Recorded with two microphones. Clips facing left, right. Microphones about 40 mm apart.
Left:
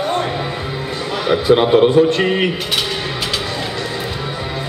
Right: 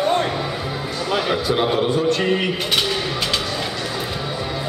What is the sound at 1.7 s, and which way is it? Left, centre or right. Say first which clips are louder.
Speech: left 7 dB; left.